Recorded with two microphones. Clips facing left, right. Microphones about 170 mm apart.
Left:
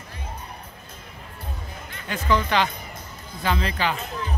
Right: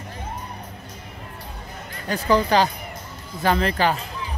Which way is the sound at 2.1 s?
35° right (ahead or behind).